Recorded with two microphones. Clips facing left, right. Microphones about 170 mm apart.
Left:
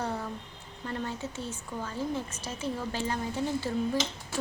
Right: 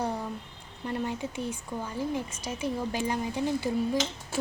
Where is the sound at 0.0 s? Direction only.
15° right (ahead or behind).